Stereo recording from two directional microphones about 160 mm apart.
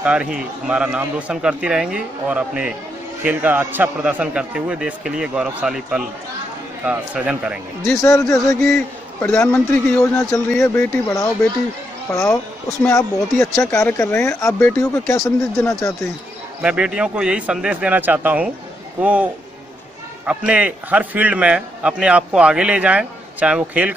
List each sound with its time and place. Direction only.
0.0 s a man's voice: 10° right (ahead or behind)
8.0 s speech: 20° left (ahead or behind)
8.5 s a man's voice: centre (ahead or behind)
9.2 s speech: 15° left (ahead or behind)
16.6 s a man's voice: 5° right (ahead or behind)
20.2 s a man's voice: 5° right (ahead or behind)